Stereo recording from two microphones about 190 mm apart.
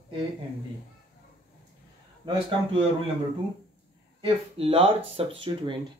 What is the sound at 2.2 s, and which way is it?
Speech, 30° right (ahead or behind).